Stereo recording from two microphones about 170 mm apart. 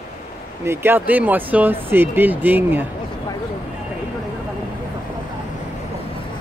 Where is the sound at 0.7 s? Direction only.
15° right (ahead or behind).